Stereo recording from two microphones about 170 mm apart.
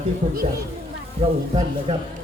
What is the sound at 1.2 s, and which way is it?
Speech, 35° right (ahead or behind).